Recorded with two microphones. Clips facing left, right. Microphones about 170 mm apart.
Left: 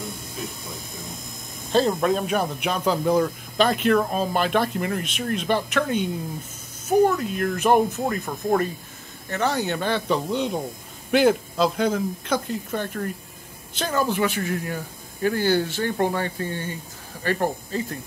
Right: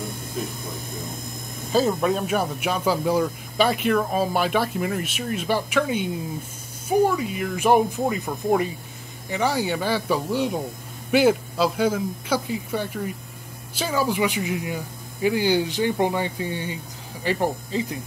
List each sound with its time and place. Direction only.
1.7 s speech: 5° right (ahead or behind)